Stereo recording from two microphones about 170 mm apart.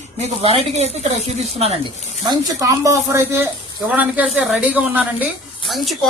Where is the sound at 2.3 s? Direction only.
20° right (ahead or behind).